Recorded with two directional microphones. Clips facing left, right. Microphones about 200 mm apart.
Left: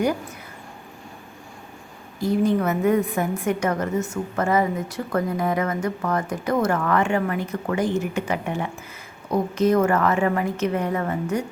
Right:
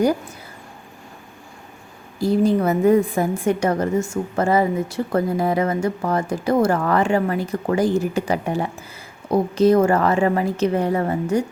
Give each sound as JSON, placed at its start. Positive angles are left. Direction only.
{"t": 2.1, "sound": "a woman's voice", "side_deg": -35}